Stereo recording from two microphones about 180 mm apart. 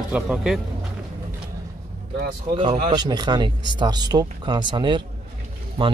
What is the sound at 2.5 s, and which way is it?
Speech, 25° right (ahead or behind).